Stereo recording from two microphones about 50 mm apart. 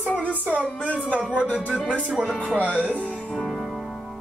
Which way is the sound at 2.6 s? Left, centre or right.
Right.